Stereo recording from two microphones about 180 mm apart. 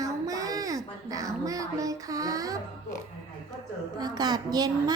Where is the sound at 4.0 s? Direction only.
20° right (ahead or behind).